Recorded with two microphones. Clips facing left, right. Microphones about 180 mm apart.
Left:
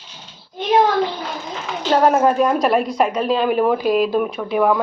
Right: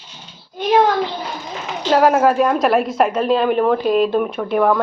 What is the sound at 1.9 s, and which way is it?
A woman's voice, centre (ahead or behind).